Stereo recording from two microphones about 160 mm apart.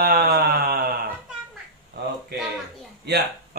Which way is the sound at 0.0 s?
75° right (ahead or behind).